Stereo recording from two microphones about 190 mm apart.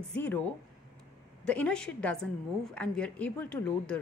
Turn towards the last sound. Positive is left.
turn(degrees=5)  # may be behind; listen again after turning